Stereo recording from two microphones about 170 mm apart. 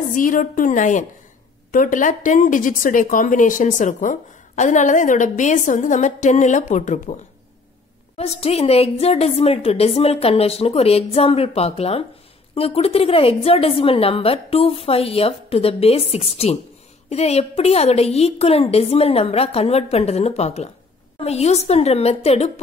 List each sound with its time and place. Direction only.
0.1 s speech: 50° left (ahead or behind)
8.2 s a woman's voice: 35° left (ahead or behind)